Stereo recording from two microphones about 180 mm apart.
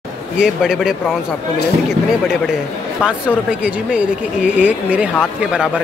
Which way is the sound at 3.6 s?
5° right (ahead or behind).